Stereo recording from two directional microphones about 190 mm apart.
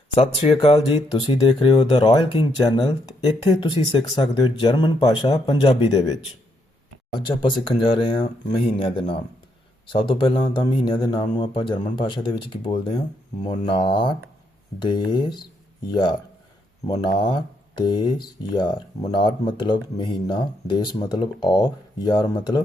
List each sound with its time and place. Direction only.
0.6 s speech: 30° left (ahead or behind)
7.1 s speech: 25° left (ahead or behind)